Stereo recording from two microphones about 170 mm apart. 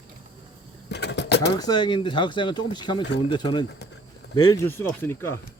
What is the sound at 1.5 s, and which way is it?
Speech, 25° left (ahead or behind).